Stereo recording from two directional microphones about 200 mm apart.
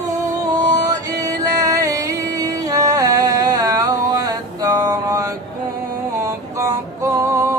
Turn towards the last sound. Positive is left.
turn(degrees=-15)  # may be behind; listen again after turning